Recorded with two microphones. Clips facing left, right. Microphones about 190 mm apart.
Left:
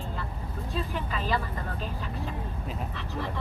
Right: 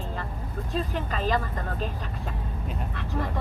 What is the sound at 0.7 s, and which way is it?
Speech, 45° right (ahead or behind).